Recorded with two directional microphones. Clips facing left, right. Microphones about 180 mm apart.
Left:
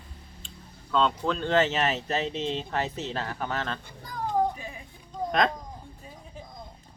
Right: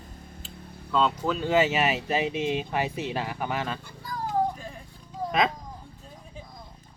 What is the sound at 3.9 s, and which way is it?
Speech, 20° left (ahead or behind).